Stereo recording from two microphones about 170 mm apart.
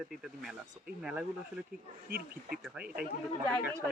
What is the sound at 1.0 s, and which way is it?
Speech, 10° right (ahead or behind).